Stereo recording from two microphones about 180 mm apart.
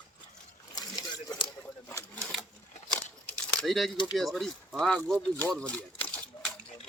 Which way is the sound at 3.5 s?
Centre (ahead or behind).